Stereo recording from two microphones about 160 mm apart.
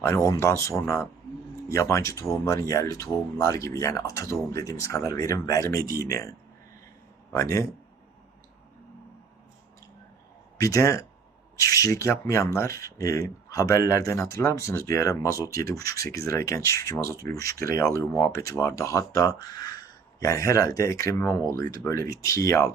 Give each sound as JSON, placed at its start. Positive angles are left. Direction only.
{"t": 0.0, "sound": "speech", "side_deg": 15}
{"t": 7.3, "sound": "speech", "side_deg": 20}
{"t": 10.6, "sound": "speech", "side_deg": 20}